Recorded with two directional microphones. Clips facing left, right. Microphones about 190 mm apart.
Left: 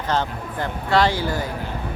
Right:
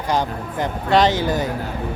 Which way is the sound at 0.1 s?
15° right (ahead or behind).